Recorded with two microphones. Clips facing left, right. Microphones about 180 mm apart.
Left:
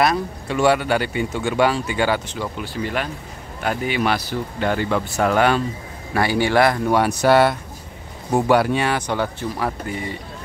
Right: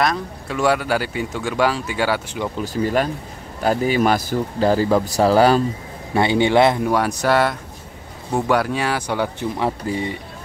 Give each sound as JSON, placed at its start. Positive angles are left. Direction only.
{"t": 0.0, "sound": "speech", "side_deg": 5}
{"t": 2.5, "sound": "speech", "side_deg": -40}
{"t": 6.1, "sound": "a man's voice", "side_deg": -20}
{"t": 7.2, "sound": "speech", "side_deg": 5}
{"t": 9.6, "sound": "a man's voice", "side_deg": -25}